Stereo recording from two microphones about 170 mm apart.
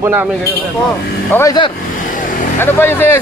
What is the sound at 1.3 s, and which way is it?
Speech, 25° left (ahead or behind).